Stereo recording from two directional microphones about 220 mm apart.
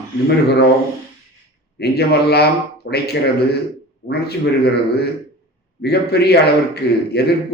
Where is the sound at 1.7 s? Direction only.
45° left (ahead or behind).